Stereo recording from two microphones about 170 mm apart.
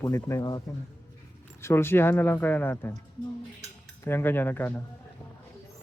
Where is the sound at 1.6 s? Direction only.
15° left (ahead or behind).